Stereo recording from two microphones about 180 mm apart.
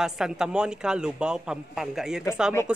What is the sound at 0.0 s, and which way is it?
A man's voice, 5° right (ahead or behind).